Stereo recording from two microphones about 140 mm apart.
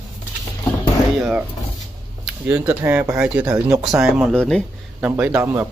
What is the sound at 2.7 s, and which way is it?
Speech, 15° right (ahead or behind).